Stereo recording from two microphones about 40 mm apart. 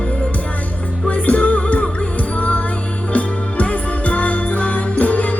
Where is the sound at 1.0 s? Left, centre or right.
Left.